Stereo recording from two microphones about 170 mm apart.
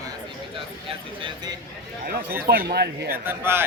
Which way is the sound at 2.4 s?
65° right (ahead or behind).